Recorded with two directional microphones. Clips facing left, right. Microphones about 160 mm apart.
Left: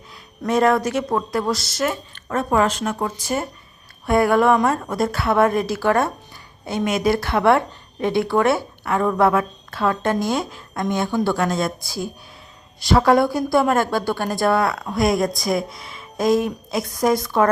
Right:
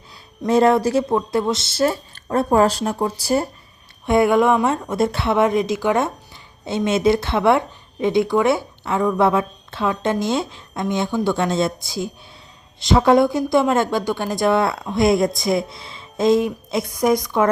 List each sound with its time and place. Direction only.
0.4 s speech: 25° right (ahead or behind)
4.0 s speech: 20° right (ahead or behind)